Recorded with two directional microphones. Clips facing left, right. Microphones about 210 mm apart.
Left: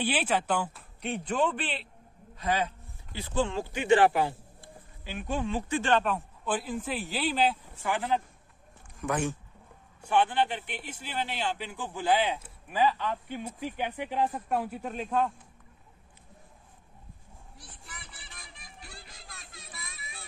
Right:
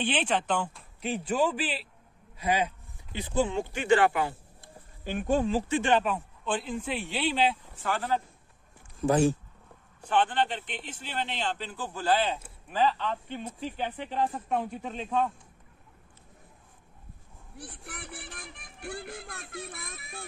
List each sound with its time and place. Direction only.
0.0 s speech: 5° left (ahead or behind); by 3.5 s 15° right (ahead or behind)
3.7 s speech: 25° left (ahead or behind)
5.0 s speech: 50° right (ahead or behind); by 5.8 s 30° right (ahead or behind)
5.8 s speech: 15° right (ahead or behind)
6.0 s speech: centre (ahead or behind)
7.8 s speech: 15° left (ahead or behind)
9.0 s speech: 35° right (ahead or behind)
10.0 s speech: 10° left (ahead or behind)
17.6 s music: 60° right (ahead or behind)